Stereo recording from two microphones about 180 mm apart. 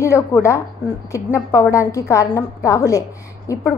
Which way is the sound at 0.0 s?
15° left (ahead or behind).